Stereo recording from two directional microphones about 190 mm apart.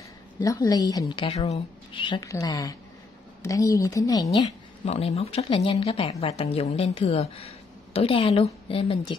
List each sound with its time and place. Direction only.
0.4 s a woman's voice: 20° left (ahead or behind)
4.8 s a woman's voice: 30° left (ahead or behind)